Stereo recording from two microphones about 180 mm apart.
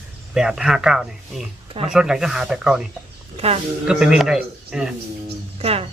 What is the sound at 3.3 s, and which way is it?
Speech, 35° right (ahead or behind).